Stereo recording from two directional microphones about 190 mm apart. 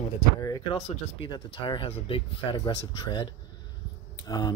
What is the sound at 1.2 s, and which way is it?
Speech, 25° left (ahead or behind).